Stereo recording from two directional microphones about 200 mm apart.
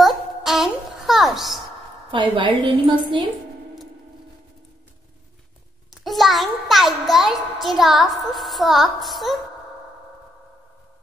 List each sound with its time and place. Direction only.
0.0 s a sound: centre (ahead or behind)
2.0 s a woman's voice: 25° right (ahead or behind)
6.0 s a woman's voice: centre (ahead or behind)